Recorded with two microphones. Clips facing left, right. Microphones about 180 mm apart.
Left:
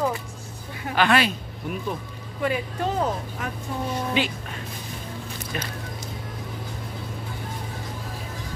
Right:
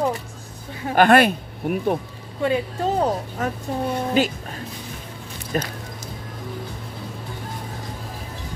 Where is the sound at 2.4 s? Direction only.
30° right (ahead or behind).